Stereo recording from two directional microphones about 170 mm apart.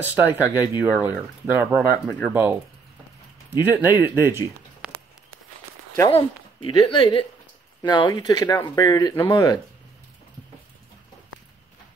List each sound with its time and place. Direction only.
0.0 s speech: 10° right (ahead or behind)
3.6 s speech: 10° right (ahead or behind)
6.0 s speech: 30° left (ahead or behind)